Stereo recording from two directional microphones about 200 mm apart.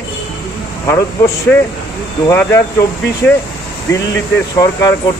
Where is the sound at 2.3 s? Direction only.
15° left (ahead or behind).